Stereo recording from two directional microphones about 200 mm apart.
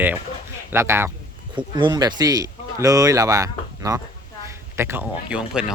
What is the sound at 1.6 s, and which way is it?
Speech, 25° right (ahead or behind).